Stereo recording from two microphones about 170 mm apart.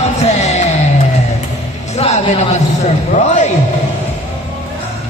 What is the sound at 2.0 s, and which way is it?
A man's voice, 40° left (ahead or behind).